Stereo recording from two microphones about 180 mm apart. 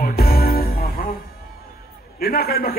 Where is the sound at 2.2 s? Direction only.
60° left (ahead or behind).